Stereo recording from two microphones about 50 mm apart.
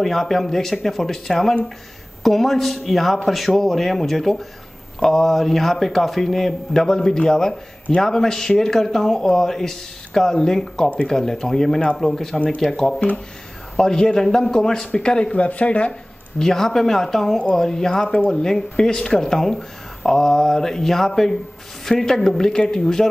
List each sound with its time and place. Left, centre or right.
0.0 s a man's voice: centre; by 15.9 s left
16.3 s speech: centre